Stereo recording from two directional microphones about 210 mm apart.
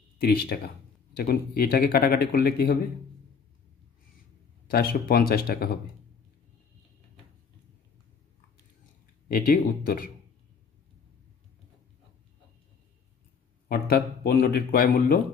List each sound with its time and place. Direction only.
0.2 s speech: 45° left (ahead or behind)
4.6 s speech: 45° left (ahead or behind)
9.3 s speech: 40° left (ahead or behind)
13.7 s speech: 45° left (ahead or behind)